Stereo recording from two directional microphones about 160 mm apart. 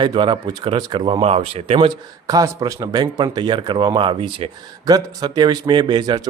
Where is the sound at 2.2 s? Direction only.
25° right (ahead or behind).